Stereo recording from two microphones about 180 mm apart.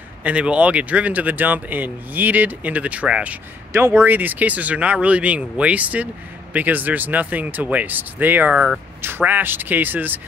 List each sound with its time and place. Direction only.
0.2 s speech: 5° right (ahead or behind)